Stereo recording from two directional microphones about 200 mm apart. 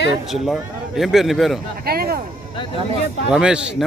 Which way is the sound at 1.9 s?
50° right (ahead or behind).